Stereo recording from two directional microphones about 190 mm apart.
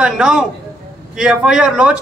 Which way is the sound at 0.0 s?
5° right (ahead or behind).